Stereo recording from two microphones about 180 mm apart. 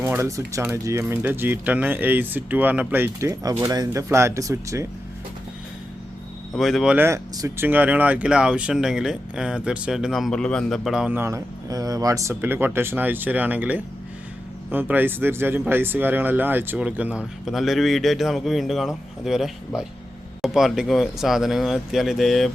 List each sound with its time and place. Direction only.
0.0 s speech: 15° right (ahead or behind)
6.5 s speech: centre (ahead or behind)